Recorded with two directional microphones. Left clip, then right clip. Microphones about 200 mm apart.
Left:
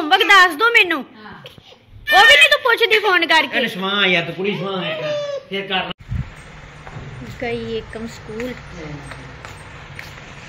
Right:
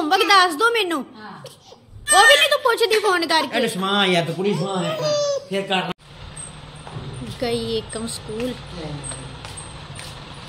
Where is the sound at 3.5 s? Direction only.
60° right (ahead or behind).